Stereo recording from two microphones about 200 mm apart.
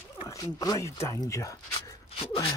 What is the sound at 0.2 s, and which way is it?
Speech, 15° left (ahead or behind).